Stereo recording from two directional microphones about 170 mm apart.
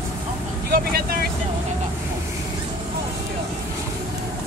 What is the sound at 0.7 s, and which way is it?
Vehicle, 60° right (ahead or behind).